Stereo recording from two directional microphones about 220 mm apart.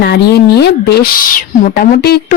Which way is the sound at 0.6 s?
50° left (ahead or behind).